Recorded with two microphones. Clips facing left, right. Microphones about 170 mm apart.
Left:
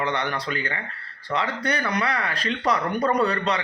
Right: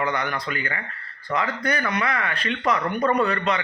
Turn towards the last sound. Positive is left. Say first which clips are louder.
# even
turn(degrees=35)  # may be behind; listen again after turning